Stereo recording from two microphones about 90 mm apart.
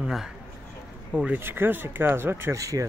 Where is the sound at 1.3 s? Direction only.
25° right (ahead or behind).